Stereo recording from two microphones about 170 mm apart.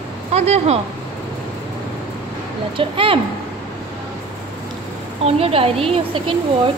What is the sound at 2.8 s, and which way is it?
Speech, 30° right (ahead or behind).